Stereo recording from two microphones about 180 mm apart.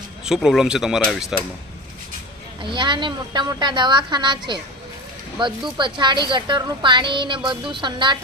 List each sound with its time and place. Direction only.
0.3 s speech: centre (ahead or behind)
2.6 s a woman's voice: 25° right (ahead or behind)